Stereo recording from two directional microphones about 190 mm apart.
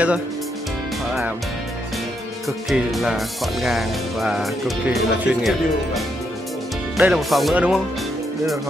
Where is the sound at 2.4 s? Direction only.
Centre (ahead or behind).